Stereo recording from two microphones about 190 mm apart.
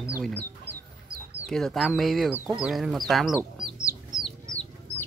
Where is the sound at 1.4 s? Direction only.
Centre (ahead or behind).